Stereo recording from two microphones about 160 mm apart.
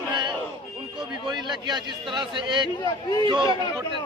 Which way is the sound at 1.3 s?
30° right (ahead or behind).